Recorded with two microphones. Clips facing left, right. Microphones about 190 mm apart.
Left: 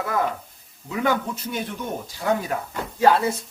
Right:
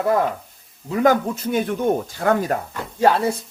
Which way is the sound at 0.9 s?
45° right (ahead or behind).